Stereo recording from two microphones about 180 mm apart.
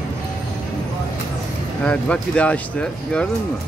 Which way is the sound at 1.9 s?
5° left (ahead or behind).